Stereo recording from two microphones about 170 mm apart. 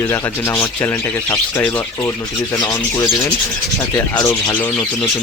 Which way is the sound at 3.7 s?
20° left (ahead or behind).